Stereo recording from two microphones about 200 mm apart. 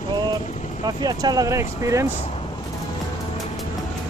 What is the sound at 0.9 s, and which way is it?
Speech, 20° right (ahead or behind).